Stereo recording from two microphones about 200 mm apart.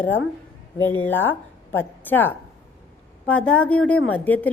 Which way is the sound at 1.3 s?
10° left (ahead or behind).